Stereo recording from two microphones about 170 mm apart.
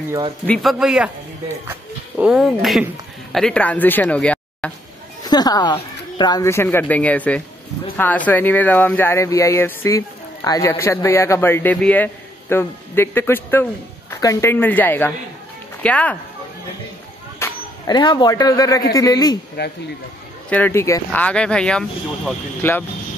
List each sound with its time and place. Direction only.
0.5 s speech: centre (ahead or behind)
5.2 s speech: 25° left (ahead or behind)
17.4 s a sound: 15° left (ahead or behind)
17.8 s a man's voice: 25° left (ahead or behind)
19.6 s speech: 80° left
20.4 s speech: 10° left (ahead or behind)